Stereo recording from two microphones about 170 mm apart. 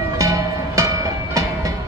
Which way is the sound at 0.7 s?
20° right (ahead or behind).